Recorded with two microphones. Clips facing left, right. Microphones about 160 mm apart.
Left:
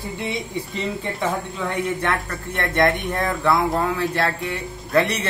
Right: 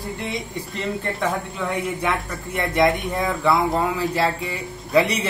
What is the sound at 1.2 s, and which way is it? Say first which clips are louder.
Speech: even; 5° right (ahead or behind).